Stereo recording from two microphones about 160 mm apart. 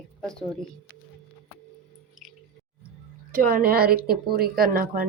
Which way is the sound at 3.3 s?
65° right (ahead or behind).